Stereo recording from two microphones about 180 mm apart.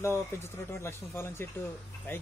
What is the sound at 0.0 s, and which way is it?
Speech, 15° left (ahead or behind).